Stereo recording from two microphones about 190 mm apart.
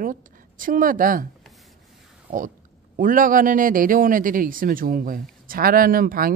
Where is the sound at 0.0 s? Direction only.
45° right (ahead or behind).